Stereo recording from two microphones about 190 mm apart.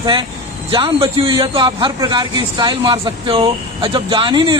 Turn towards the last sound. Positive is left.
turn(degrees=-25)  # may be behind; listen again after turning